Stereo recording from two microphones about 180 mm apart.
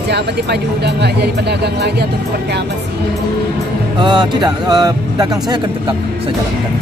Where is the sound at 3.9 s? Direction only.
25° right (ahead or behind).